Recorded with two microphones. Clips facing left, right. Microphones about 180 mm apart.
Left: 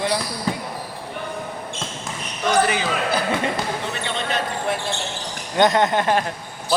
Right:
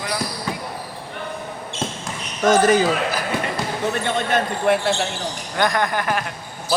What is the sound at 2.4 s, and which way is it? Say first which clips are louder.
Speech: right 5 dB; 45° right (ahead or behind).